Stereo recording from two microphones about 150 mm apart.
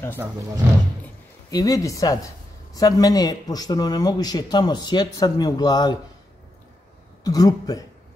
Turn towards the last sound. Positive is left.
turn(degrees=25)  # may be behind; listen again after turning